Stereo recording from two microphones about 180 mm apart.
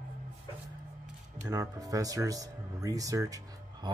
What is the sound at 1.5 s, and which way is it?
Speech, 20° right (ahead or behind).